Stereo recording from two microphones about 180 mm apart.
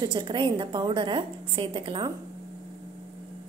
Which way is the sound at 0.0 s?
25° right (ahead or behind).